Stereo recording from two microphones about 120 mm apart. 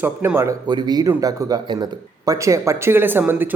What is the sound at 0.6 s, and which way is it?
A man's voice, 35° right (ahead or behind).